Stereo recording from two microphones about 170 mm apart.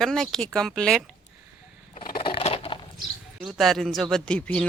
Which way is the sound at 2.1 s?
30° left (ahead or behind).